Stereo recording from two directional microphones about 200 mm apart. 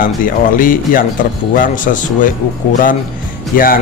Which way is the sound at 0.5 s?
45° left (ahead or behind).